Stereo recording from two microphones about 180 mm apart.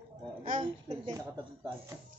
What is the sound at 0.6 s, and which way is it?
Speech, 25° right (ahead or behind).